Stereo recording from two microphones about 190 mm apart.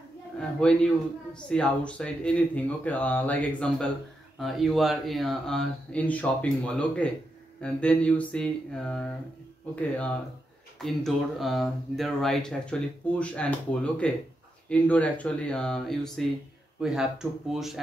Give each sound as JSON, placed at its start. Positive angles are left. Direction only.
{"t": 0.4, "sound": "a man's voice", "side_deg": 5}